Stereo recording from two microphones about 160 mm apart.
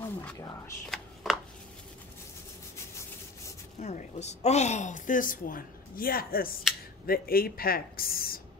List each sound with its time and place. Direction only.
0.0 s a sound: 10° left (ahead or behind)
0.8 s chopping: centre (ahead or behind)
3.8 s a woman's voice: 45° left (ahead or behind); by 8.4 s 65° left (ahead or behind)